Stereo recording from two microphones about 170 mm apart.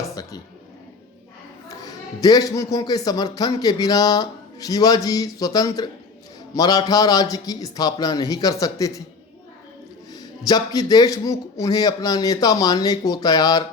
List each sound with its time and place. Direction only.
0.1 s a sound: 20° left (ahead or behind)
1.8 s a man's voice: 20° left (ahead or behind)
10.1 s a man's voice: 20° left (ahead or behind)